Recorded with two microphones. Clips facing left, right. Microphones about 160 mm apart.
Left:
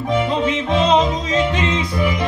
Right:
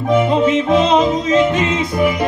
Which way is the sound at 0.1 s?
45° right (ahead or behind).